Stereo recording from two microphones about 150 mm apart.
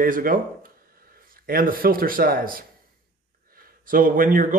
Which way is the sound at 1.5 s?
70° right (ahead or behind).